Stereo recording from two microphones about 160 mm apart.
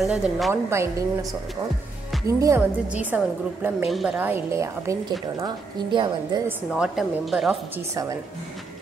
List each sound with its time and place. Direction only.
0.0 s a woman's voice: centre (ahead or behind)
0.5 s a woman's voice: 15° right (ahead or behind)
2.2 s a woman's voice: 20° right (ahead or behind); by 4.3 s centre (ahead or behind)
4.3 s a woman's voice: 15° right (ahead or behind)
5.9 s a woman's voice: 30° right (ahead or behind)
6.7 s a woman's voice: centre (ahead or behind)
7.9 s a woman's voice: 20° right (ahead or behind)